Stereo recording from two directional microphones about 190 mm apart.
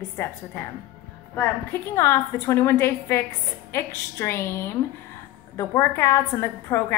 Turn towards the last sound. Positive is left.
turn(degrees=15)  # may be behind; listen again after turning